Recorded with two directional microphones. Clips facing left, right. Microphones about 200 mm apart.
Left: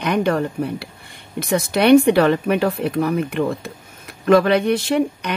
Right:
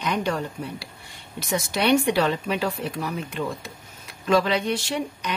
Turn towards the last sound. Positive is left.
turn(degrees=60)  # may be behind; listen again after turning